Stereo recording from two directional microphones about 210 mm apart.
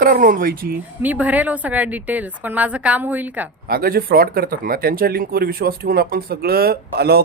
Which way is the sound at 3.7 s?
45° right (ahead or behind).